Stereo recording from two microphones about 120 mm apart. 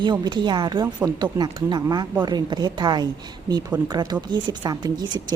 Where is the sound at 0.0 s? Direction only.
40° right (ahead or behind).